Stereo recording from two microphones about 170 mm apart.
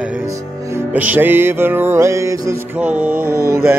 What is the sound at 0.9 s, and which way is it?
Music, 10° right (ahead or behind).